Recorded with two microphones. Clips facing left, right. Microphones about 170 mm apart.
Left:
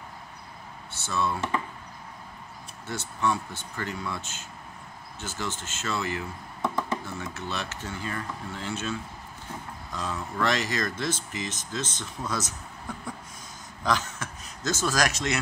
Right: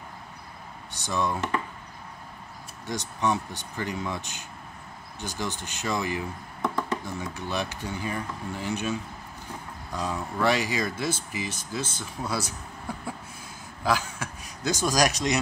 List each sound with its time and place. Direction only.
0.9 s speech: 15° right (ahead or behind)
2.9 s speech: 15° right (ahead or behind)
9.9 s speech: 15° right (ahead or behind)
13.8 s a man's voice: 10° right (ahead or behind)